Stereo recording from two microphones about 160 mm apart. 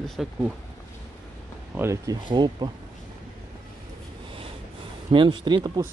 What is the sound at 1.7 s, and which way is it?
Speech, 15° right (ahead or behind).